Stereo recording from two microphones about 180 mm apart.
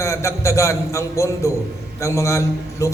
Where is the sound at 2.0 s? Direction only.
15° left (ahead or behind).